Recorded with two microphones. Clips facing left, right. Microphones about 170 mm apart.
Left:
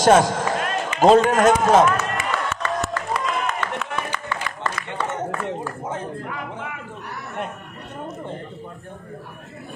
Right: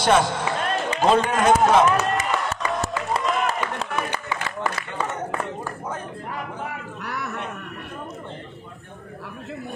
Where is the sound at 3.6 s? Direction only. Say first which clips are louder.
Even; 10° right (ahead or behind).